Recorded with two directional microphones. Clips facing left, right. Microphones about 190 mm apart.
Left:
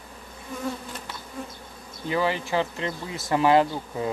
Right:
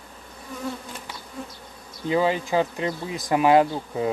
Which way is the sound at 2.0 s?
20° right (ahead or behind).